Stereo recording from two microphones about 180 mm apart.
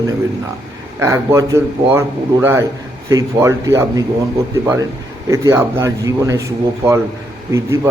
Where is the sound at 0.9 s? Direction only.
15° right (ahead or behind).